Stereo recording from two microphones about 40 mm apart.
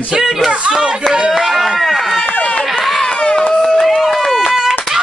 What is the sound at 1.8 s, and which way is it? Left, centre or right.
Run, centre.